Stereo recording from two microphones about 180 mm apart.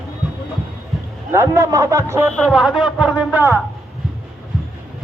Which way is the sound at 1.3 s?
15° right (ahead or behind).